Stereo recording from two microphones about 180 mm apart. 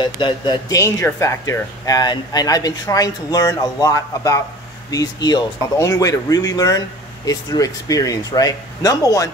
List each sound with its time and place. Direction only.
0.0 s speech: 25° left (ahead or behind)